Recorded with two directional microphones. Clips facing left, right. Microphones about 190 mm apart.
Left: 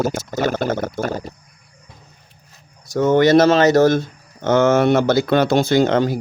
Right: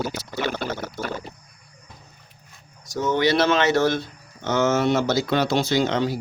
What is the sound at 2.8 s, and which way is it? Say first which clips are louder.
Speech: left 7 dB; 55° left (ahead or behind).